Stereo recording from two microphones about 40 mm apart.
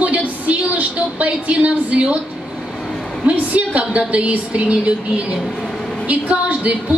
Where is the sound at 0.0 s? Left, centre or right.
Right.